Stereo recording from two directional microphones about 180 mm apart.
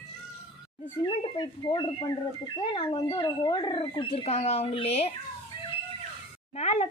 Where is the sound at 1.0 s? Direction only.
25° left (ahead or behind).